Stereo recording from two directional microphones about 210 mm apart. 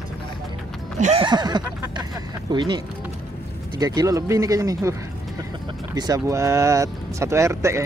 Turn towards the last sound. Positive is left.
turn(degrees=-15)  # may be behind; listen again after turning